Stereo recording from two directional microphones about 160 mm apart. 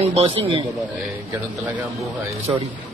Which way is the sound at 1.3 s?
10° right (ahead or behind).